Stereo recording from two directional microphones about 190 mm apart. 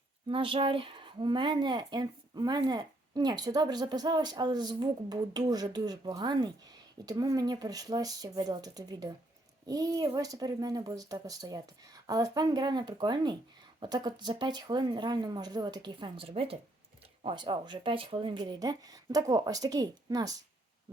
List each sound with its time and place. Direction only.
0.3 s speech: 25° right (ahead or behind)